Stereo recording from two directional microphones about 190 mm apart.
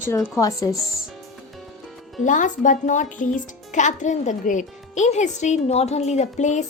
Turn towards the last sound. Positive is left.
turn(degrees=40)  # may be behind; listen again after turning